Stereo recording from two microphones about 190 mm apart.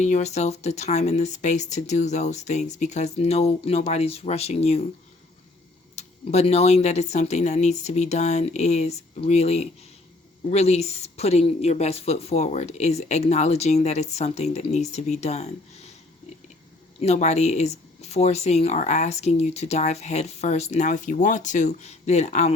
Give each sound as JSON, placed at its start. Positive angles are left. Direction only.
{"t": 0.0, "sound": "speech", "side_deg": 35}
{"t": 6.0, "sound": "speech", "side_deg": 35}
{"t": 17.0, "sound": "speech", "side_deg": 35}